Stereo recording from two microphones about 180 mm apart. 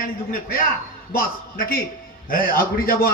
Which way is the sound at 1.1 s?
55° left (ahead or behind).